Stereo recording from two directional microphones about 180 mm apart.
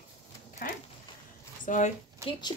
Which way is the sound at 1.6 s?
45° left (ahead or behind).